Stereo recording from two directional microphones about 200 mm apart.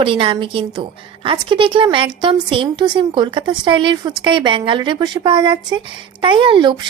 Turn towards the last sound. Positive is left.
turn(degrees=-25)  # may be behind; listen again after turning